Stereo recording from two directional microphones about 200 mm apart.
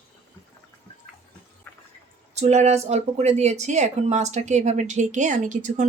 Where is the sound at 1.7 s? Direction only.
10° left (ahead or behind).